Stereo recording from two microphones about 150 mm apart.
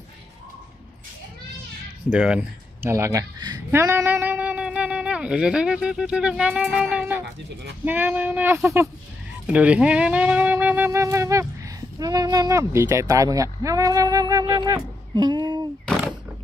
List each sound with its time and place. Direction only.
2.0 s speech: 5° right (ahead or behind)
2.9 s speech: 20° right (ahead or behind)
9.5 s music: 10° right (ahead or behind)
12.0 s speech: 25° right (ahead or behind)